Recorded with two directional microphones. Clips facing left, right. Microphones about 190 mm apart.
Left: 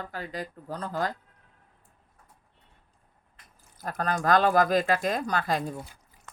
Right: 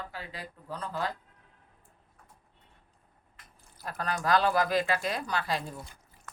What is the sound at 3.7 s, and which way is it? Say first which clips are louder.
Speech: left 4 dB; 45° left (ahead or behind).